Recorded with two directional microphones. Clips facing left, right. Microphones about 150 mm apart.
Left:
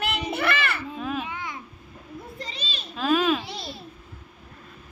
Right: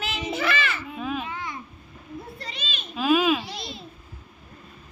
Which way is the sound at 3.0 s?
5° right (ahead or behind).